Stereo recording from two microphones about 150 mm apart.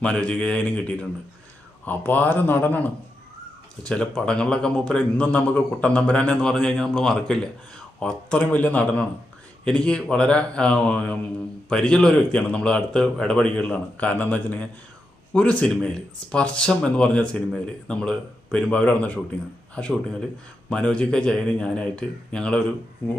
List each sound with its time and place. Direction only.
0.0 s a man's voice: 5° left (ahead or behind)